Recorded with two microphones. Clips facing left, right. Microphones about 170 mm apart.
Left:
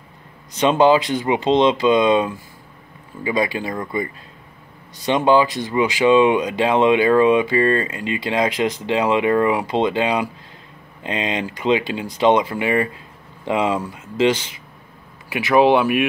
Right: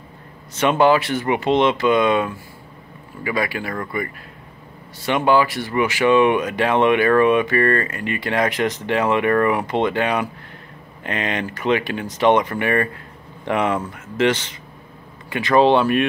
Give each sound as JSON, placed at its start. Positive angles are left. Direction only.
{"t": 0.6, "sound": "speech", "side_deg": 20}